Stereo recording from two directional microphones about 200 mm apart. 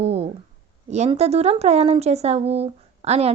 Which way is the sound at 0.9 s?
35° right (ahead or behind).